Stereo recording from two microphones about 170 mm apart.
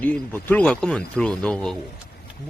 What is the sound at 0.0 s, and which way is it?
Speech, 10° left (ahead or behind).